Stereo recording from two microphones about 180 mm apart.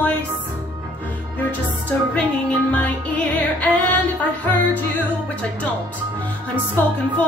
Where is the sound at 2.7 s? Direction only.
10° left (ahead or behind).